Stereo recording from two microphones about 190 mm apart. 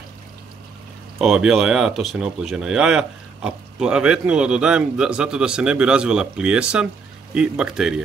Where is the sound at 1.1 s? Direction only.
5° right (ahead or behind).